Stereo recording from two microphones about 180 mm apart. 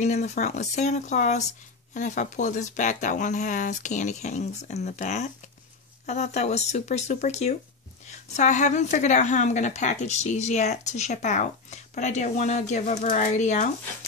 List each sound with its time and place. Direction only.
0.0 s a woman's voice: 40° left (ahead or behind)